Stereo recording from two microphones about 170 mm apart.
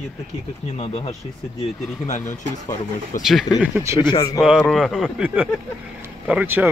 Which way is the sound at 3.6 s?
15° right (ahead or behind).